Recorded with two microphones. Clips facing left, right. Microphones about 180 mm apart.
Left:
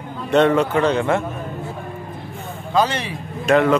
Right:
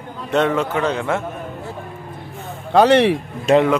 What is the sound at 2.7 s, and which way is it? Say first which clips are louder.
Speech: right 8 dB; 65° right (ahead or behind).